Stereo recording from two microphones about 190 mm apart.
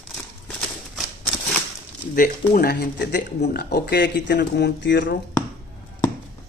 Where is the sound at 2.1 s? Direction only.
45° left (ahead or behind); by 5.2 s 70° left (ahead or behind).